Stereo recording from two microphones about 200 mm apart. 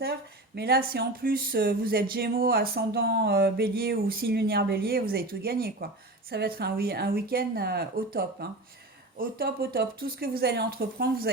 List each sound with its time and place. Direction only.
0.0 s speech: 55° right (ahead or behind)